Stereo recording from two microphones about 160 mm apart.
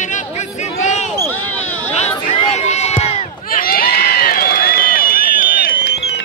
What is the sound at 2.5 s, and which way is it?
Run, 45° left (ahead or behind).